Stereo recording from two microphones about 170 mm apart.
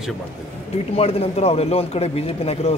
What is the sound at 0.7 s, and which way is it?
Speech, 35° left (ahead or behind).